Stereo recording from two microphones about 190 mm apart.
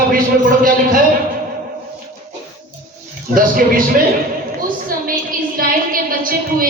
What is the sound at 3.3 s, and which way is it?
Speech, 50° right (ahead or behind).